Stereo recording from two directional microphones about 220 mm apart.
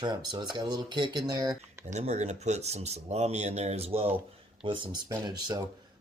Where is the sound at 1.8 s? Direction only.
30° right (ahead or behind).